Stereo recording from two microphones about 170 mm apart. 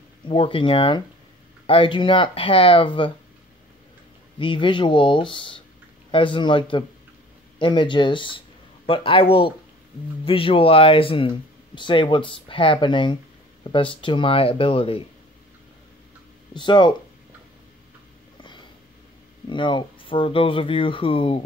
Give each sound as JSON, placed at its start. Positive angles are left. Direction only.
{"t": 0.3, "sound": "speech", "side_deg": 30}
{"t": 4.4, "sound": "speech", "side_deg": 30}
{"t": 16.5, "sound": "speech", "side_deg": 25}
{"t": 18.4, "sound": "a sound", "side_deg": 30}
{"t": 19.5, "sound": "speech", "side_deg": 30}